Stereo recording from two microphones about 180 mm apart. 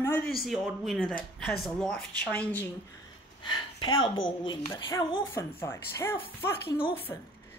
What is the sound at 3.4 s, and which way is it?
A woman's voice, 25° left (ahead or behind).